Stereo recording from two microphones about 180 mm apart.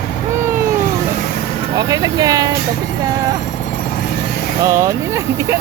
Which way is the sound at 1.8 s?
20° right (ahead or behind).